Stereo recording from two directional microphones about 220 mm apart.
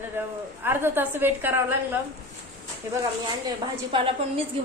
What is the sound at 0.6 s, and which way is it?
A woman's voice, 10° right (ahead or behind).